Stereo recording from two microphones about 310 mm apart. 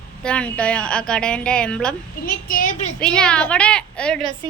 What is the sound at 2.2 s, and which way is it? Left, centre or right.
Speech, left.